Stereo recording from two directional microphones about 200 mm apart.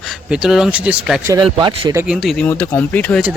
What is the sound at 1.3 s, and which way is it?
Speech, 20° right (ahead or behind).